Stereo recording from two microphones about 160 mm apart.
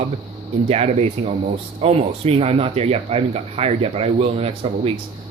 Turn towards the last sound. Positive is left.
turn(degrees=-40)  # may be behind; listen again after turning